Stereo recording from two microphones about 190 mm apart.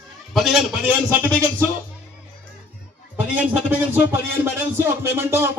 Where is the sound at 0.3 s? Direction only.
Centre (ahead or behind).